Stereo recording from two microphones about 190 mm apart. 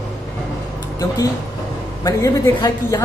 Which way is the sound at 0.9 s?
20° left (ahead or behind).